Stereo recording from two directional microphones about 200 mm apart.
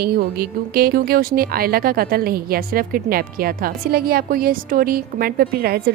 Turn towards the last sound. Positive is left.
turn(degrees=-50)  # may be behind; listen again after turning